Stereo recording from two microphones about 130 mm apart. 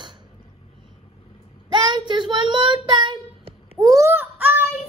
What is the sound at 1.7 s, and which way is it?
Child singing, 35° right (ahead or behind).